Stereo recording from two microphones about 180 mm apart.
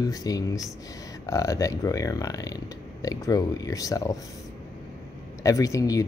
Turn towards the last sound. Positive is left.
turn(degrees=20)  # may be behind; listen again after turning